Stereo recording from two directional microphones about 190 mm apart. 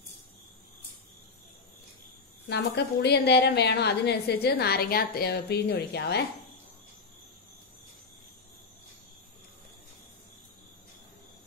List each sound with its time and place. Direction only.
2.5 s a woman's voice: 60° left (ahead or behind)